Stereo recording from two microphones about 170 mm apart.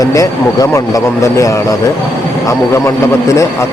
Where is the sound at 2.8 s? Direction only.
15° left (ahead or behind).